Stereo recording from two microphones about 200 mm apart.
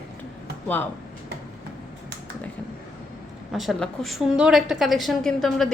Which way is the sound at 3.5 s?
Centre (ahead or behind).